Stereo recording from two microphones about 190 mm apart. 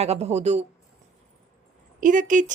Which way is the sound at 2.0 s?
45° right (ahead or behind).